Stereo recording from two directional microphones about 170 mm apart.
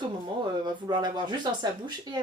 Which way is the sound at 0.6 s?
25° right (ahead or behind).